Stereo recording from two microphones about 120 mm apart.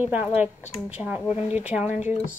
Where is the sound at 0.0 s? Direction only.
15° right (ahead or behind).